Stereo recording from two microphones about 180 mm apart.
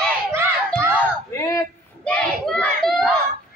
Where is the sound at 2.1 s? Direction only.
5° left (ahead or behind).